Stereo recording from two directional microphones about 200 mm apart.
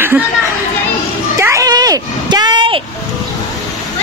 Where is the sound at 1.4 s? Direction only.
15° right (ahead or behind).